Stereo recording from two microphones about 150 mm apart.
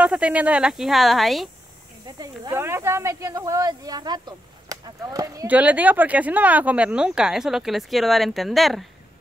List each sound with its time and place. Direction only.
0.0 s speech: 10° right (ahead or behind)
2.0 s speech: 25° right (ahead or behind)
2.5 s speech: 15° right (ahead or behind)
5.5 s speech: 10° right (ahead or behind)